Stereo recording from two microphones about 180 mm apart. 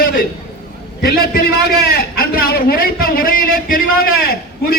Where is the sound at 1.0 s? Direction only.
55° left (ahead or behind).